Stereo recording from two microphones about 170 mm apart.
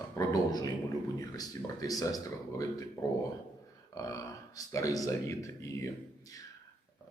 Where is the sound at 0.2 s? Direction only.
20° left (ahead or behind).